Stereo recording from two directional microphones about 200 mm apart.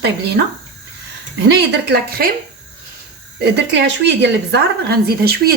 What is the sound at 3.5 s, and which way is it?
Speech, 60° right (ahead or behind).